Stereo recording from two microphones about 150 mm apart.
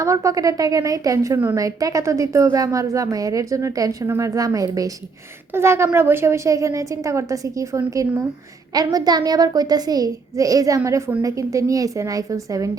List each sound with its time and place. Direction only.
0.0 s a woman's voice: 20° right (ahead or behind)